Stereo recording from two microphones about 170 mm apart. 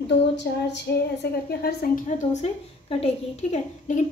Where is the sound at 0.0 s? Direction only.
90° left.